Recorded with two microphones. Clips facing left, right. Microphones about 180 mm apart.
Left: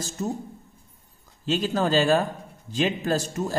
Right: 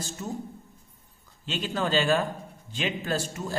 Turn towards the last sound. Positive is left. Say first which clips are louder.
# left 4 dB
turn(degrees=40)  # may be behind; listen again after turning